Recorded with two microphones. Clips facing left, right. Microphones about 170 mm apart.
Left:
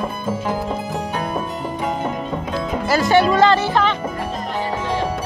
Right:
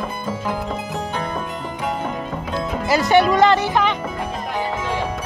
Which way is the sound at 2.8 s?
20° right (ahead or behind).